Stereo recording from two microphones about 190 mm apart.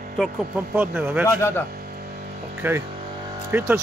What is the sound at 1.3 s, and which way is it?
Speech, 15° left (ahead or behind).